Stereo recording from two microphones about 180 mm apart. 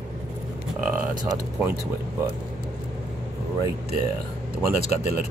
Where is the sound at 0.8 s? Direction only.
50° right (ahead or behind).